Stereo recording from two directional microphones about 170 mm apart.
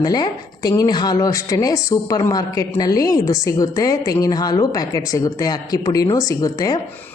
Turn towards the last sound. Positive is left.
turn(degrees=20)  # may be behind; listen again after turning